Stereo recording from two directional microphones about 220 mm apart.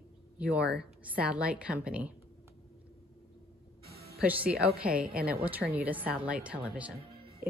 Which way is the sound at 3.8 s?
45° right (ahead or behind).